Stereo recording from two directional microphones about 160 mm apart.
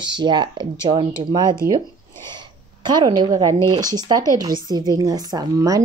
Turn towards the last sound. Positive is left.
turn(degrees=-20)  # may be behind; listen again after turning